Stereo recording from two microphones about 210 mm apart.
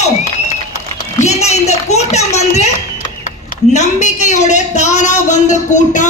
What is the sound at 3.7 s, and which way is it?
Speech, 35° left (ahead or behind).